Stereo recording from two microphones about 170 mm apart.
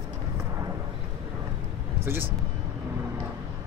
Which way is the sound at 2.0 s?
10° right (ahead or behind).